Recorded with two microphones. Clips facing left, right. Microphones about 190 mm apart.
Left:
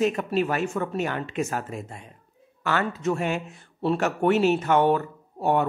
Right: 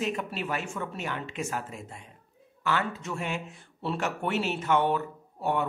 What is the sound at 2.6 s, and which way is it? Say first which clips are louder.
Speech: left 5 dB; 45° left (ahead or behind).